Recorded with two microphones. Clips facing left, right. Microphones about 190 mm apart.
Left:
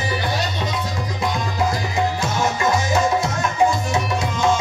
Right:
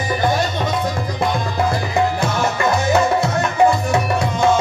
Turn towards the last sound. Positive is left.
turn(degrees=-60)  # may be behind; listen again after turning